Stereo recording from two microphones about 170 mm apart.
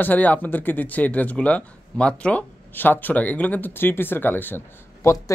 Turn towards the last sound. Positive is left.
turn(degrees=20)  # may be behind; listen again after turning